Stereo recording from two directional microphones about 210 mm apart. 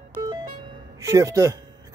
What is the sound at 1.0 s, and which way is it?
Speech, 15° right (ahead or behind).